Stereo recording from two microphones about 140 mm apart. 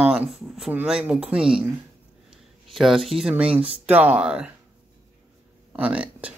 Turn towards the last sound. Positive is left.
turn(degrees=-10)  # may be behind; listen again after turning